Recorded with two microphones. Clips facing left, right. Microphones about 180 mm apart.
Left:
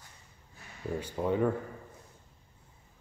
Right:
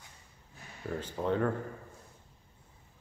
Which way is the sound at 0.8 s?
10° left (ahead or behind).